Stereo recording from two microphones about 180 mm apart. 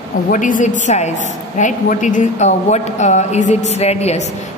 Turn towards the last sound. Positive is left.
turn(degrees=35)  # may be behind; listen again after turning